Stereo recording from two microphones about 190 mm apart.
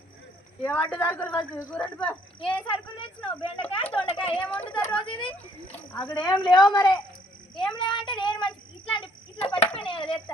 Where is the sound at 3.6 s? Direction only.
30° left (ahead or behind).